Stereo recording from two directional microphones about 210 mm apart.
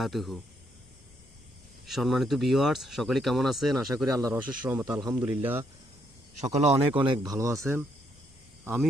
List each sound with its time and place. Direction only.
0.0 s speech: centre (ahead or behind)
1.9 s speech: centre (ahead or behind)
4.2 s speech: 10° right (ahead or behind)
6.4 s speech: 35° right (ahead or behind); by 8.9 s 5° right (ahead or behind)